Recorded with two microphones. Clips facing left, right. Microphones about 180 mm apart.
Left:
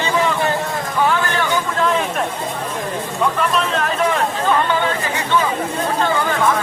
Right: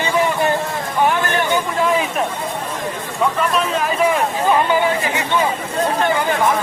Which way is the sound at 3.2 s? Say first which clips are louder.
Right 1 dB; 5° right (ahead or behind).